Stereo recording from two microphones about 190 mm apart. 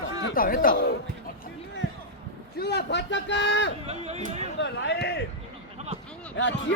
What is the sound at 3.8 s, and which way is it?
Speech, 35° right (ahead or behind).